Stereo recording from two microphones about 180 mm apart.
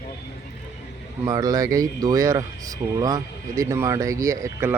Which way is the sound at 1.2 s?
20° right (ahead or behind).